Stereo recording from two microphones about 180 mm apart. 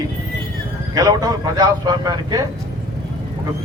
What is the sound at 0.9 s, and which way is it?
A man's voice, 20° right (ahead or behind).